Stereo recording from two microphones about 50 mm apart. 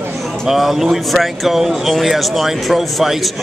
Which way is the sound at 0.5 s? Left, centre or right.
Centre.